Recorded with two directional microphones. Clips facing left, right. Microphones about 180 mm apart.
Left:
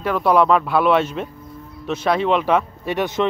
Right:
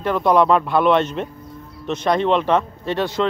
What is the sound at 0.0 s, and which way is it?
Speech, 5° left (ahead or behind).